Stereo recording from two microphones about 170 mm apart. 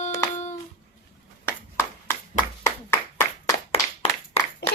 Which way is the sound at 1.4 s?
15° left (ahead or behind).